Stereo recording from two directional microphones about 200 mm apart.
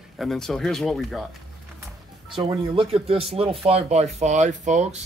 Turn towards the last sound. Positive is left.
turn(degrees=-35)  # may be behind; listen again after turning